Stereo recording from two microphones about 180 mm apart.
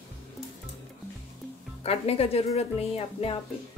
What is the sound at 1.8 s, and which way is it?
Speech, 35° left (ahead or behind).